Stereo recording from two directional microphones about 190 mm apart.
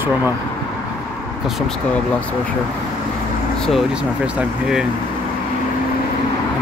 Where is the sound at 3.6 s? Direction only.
Centre (ahead or behind).